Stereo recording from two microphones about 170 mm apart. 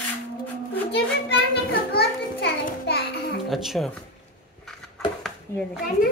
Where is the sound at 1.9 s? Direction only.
70° left (ahead or behind).